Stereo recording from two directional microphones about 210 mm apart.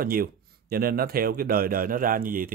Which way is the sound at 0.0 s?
45° right (ahead or behind).